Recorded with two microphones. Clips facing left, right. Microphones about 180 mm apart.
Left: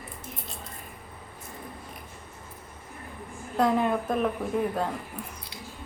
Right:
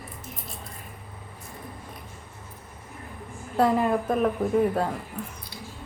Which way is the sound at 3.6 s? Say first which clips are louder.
Right 2 dB; 5° right (ahead or behind).